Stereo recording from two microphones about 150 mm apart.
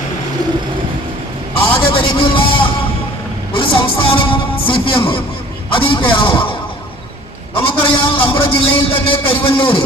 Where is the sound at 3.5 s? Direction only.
35° left (ahead or behind).